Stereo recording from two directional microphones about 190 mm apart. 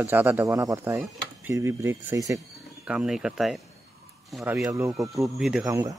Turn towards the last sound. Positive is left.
turn(degrees=-20)  # may be behind; listen again after turning